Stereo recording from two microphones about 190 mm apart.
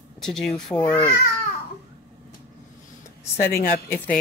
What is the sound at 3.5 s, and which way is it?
Speech, 50° left (ahead or behind).